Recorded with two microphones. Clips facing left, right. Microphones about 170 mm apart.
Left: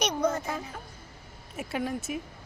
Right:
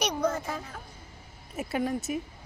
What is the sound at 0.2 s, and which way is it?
A woman's voice, 5° left (ahead or behind).